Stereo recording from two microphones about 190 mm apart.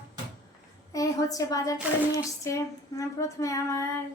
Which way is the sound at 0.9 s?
20° left (ahead or behind).